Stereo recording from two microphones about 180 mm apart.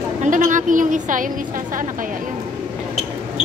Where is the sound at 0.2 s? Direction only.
45° right (ahead or behind).